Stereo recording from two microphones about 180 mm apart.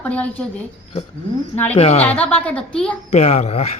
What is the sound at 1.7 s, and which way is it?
Mantra, 35° left (ahead or behind).